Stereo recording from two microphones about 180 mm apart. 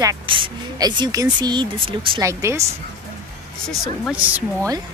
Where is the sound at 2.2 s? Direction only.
15° right (ahead or behind).